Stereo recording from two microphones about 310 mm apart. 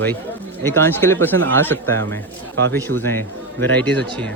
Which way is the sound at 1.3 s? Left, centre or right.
Right.